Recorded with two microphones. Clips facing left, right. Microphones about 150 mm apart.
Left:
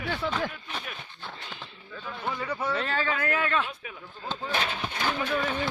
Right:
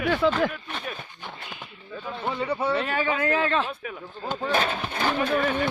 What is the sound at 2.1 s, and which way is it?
Speech, 25° right (ahead or behind).